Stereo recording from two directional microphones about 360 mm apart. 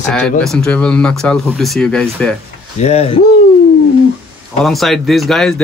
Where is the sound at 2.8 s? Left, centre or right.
Centre.